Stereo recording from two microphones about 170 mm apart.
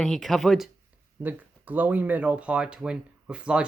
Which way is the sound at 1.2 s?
10° right (ahead or behind).